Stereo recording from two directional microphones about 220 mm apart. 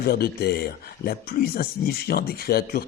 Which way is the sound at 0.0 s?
45° left (ahead or behind).